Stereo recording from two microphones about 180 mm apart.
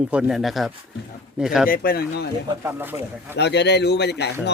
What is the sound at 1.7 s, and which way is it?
Speech, 55° left (ahead or behind).